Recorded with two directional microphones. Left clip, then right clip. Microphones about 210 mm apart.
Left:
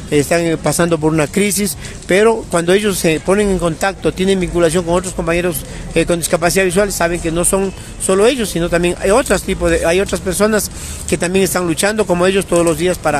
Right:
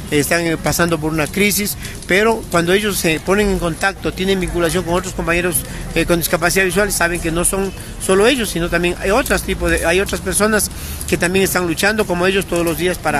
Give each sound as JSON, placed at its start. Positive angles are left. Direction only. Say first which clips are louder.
{"t": 0.1, "sound": "speech", "louder": "left 2 dB", "side_deg": 20}